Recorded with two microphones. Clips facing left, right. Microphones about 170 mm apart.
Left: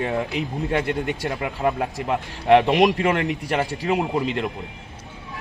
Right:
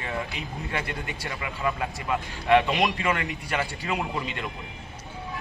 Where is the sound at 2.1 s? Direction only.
65° left (ahead or behind); by 4.2 s 50° left (ahead or behind).